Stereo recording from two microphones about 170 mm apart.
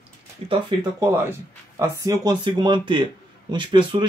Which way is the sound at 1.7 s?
20° right (ahead or behind).